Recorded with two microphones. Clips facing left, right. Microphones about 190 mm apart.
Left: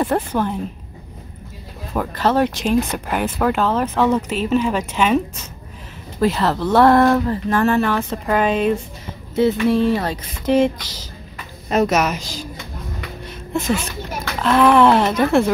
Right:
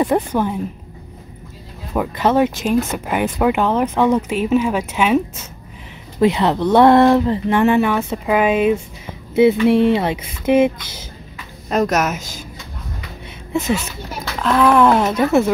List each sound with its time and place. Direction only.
0.0 s speech: 10° right (ahead or behind)
2.0 s speech: 10° right (ahead or behind)
9.7 s speech: 20° right (ahead or behind)
10.0 s speech: 10° right (ahead or behind)
11.7 s speech: 5° left (ahead or behind)
14.4 s speech: centre (ahead or behind)